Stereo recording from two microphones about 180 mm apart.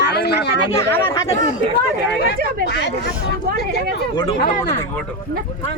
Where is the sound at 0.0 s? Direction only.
65° left (ahead or behind).